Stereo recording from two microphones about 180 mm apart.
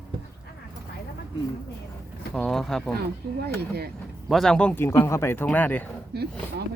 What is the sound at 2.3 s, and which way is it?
Speech, centre (ahead or behind).